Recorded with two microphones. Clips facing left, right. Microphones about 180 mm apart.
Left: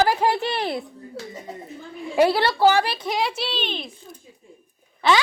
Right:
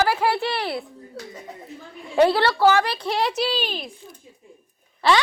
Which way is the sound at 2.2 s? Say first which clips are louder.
Right 1 dB; 15° left (ahead or behind).